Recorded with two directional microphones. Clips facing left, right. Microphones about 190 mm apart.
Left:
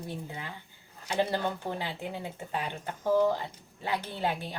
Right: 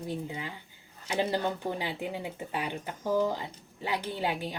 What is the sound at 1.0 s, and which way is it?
Speech, 15° right (ahead or behind).